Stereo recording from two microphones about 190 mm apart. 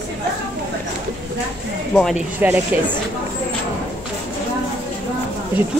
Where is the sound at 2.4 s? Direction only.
10° right (ahead or behind).